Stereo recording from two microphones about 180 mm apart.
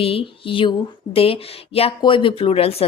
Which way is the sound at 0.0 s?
30° left (ahead or behind).